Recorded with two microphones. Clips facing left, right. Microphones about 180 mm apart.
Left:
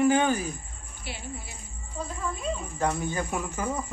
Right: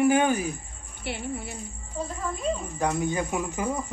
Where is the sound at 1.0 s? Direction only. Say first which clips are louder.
Right 7 dB; 60° right (ahead or behind).